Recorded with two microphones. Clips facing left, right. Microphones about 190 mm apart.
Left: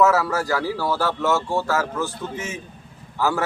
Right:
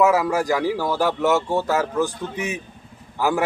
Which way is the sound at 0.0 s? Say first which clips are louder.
Right 1 dB; 15° right (ahead or behind).